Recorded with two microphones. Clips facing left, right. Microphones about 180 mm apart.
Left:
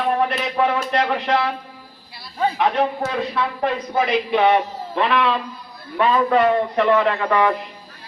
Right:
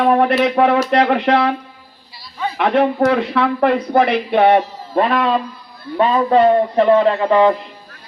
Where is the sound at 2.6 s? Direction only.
65° right (ahead or behind).